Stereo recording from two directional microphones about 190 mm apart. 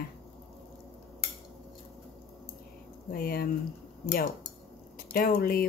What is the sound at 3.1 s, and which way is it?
Speech, 50° left (ahead or behind).